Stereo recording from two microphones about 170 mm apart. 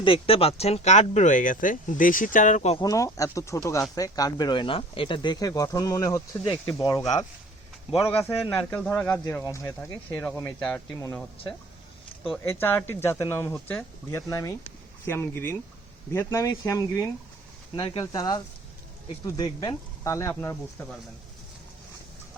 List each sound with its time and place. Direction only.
0.0 s speech: 30° left (ahead or behind)
2.8 s a man's voice: 20° left (ahead or behind)
7.9 s a man's voice: 15° left (ahead or behind)
12.5 s a man's voice: 15° left (ahead or behind)
13.5 s speech: 5° left (ahead or behind)
14.1 s a man's voice: 15° left (ahead or behind)
17.7 s speech: 35° left (ahead or behind)
18.0 s speech: 20° left (ahead or behind)